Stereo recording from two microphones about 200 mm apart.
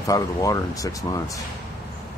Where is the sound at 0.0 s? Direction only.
15° left (ahead or behind).